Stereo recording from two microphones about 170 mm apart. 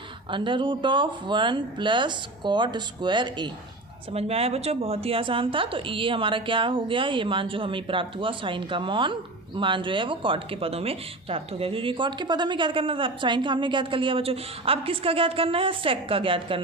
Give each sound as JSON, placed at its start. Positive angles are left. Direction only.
{"t": 0.3, "sound": "speech", "side_deg": -30}